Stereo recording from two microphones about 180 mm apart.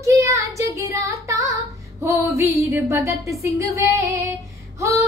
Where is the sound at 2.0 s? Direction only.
15° right (ahead or behind).